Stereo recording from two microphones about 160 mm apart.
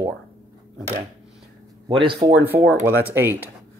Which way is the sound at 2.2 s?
15° right (ahead or behind).